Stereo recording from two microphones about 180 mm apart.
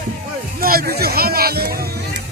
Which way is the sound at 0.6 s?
55° right (ahead or behind).